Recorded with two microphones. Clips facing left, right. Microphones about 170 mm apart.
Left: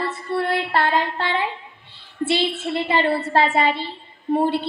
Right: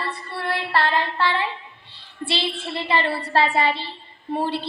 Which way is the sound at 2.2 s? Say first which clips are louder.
Left 5 dB; 20° left (ahead or behind).